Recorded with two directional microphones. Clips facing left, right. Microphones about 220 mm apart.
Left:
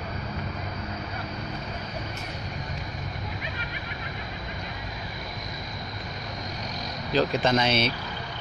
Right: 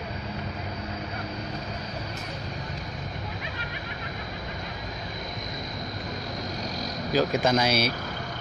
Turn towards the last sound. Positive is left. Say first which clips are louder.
# even
turn(degrees=0)  # may be behind; listen again after turning